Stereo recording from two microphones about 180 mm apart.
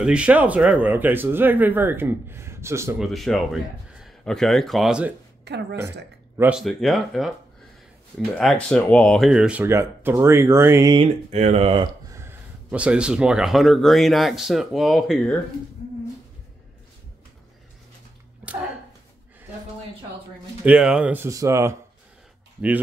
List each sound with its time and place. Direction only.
0.0 s speech: 5° right (ahead or behind)
3.0 s speech: centre (ahead or behind)
5.4 s a woman's voice: 70° right (ahead or behind)
6.3 s speech: 10° right (ahead or behind)
8.4 s speech: 5° left (ahead or behind); by 11.0 s 15° right (ahead or behind)
11.0 s speech: 35° right (ahead or behind)
12.1 s speech: 15° right (ahead or behind)
20.6 s speech: 5° right (ahead or behind)